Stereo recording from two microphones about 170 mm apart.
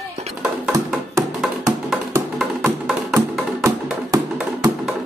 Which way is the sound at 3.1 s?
15° right (ahead or behind).